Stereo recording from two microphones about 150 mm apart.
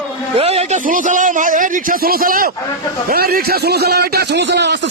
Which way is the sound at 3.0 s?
85° right.